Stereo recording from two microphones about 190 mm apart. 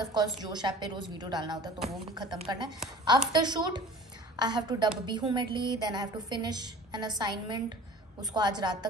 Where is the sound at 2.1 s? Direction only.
20° right (ahead or behind).